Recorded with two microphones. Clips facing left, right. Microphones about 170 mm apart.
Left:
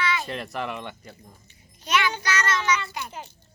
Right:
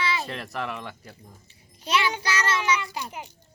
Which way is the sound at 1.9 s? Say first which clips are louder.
Even; 30° right (ahead or behind).